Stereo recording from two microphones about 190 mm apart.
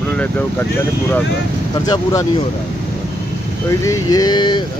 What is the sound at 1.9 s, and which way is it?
Speech, 15° left (ahead or behind).